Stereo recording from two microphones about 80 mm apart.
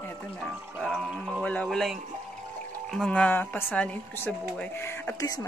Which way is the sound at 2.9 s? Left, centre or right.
Centre.